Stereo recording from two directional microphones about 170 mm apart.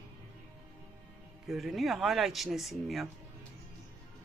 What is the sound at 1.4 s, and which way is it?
Speech, centre (ahead or behind).